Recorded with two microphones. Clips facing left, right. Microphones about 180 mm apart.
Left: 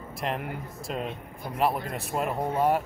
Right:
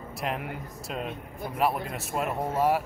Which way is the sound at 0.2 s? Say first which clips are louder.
Left 1 dB; centre (ahead or behind).